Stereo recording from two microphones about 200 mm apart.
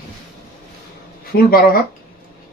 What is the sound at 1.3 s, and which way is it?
Speech, 45° left (ahead or behind).